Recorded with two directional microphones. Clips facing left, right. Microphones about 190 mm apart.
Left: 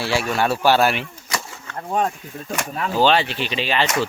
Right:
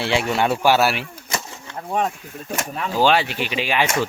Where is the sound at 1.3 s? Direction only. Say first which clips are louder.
Right 1 dB; 20° right (ahead or behind).